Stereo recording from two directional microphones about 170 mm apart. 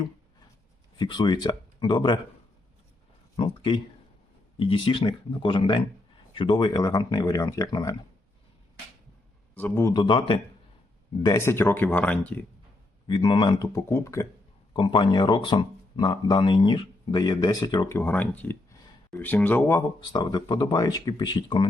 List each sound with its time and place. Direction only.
0.9 s speech: 25° left (ahead or behind)
3.3 s speech: 30° left (ahead or behind)
9.6 s speech: 10° left (ahead or behind)
9.9 s speech: 30° left (ahead or behind); by 12.4 s 10° left (ahead or behind)
13.1 s speech: 25° left (ahead or behind)
14.7 s speech: 30° left (ahead or behind)
20.1 s speech: 25° left (ahead or behind)